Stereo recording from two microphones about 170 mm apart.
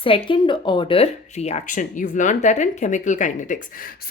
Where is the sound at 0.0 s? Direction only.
30° left (ahead or behind).